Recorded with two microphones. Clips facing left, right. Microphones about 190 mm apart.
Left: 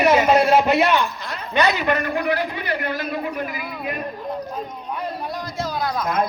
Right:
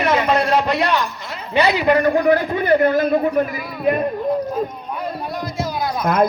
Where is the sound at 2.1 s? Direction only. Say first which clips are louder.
Right 7 dB; 45° right (ahead or behind).